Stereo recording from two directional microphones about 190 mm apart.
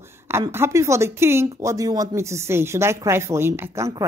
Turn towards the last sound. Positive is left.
turn(degrees=-15)  # may be behind; listen again after turning